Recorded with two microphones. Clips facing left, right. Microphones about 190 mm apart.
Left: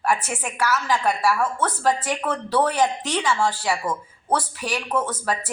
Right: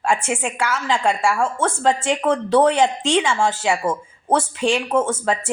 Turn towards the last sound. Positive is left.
turn(degrees=-25)  # may be behind; listen again after turning